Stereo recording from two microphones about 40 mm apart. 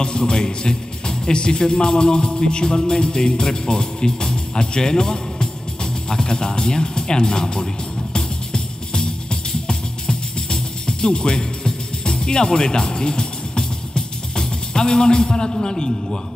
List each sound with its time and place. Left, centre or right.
0.0 s speech: left
8.1 s music: left